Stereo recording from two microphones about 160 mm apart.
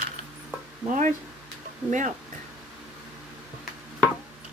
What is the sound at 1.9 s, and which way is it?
Speech, 50° right (ahead or behind).